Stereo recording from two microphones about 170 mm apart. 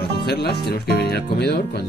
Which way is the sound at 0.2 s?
70° left (ahead or behind).